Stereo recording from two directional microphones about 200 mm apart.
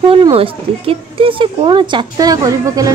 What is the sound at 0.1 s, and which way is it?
Speech, 30° right (ahead or behind).